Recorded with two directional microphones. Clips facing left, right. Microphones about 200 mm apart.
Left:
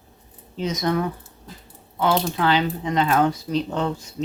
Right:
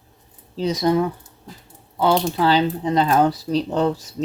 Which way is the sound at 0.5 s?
35° right (ahead or behind).